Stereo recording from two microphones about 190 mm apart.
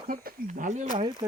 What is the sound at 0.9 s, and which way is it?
Speech, 25° right (ahead or behind).